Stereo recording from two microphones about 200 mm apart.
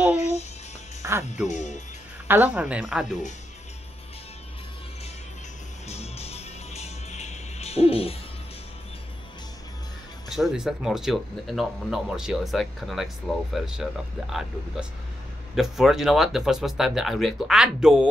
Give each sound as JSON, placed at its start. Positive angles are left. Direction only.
{"t": 0.1, "sound": "music", "side_deg": 35}
{"t": 1.0, "sound": "music", "side_deg": -10}
{"t": 1.5, "sound": "speech", "side_deg": 35}
{"t": 2.2, "sound": "speech", "side_deg": -10}
{"t": 5.9, "sound": "music", "side_deg": 30}
{"t": 10.3, "sound": "speech", "side_deg": 0}
{"t": 15.5, "sound": "speech", "side_deg": 0}